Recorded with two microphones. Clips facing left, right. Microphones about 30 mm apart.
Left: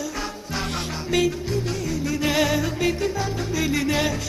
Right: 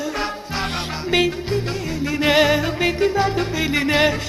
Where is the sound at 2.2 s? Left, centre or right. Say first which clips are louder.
Right 6 dB; right.